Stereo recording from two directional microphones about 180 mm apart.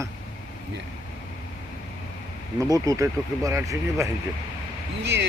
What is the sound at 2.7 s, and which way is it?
Speech, 20° right (ahead or behind).